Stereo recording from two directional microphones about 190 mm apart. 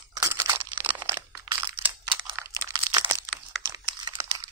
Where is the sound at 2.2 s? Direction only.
15° right (ahead or behind).